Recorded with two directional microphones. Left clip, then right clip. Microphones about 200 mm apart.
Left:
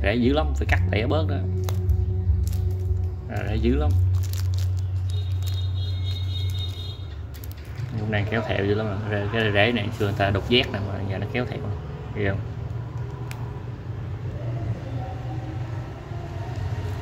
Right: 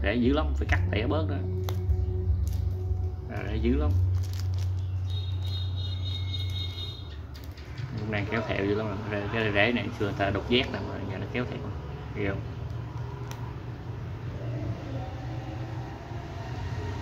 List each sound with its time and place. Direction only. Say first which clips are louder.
0.0 s speech: left 4 dB; 20° left (ahead or behind)
3.3 s speech: left 4 dB; 20° left (ahead or behind)
8.1 s speech: left 4 dB; 15° left (ahead or behind)